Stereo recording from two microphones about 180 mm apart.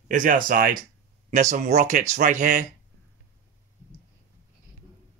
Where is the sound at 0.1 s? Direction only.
50° right (ahead or behind).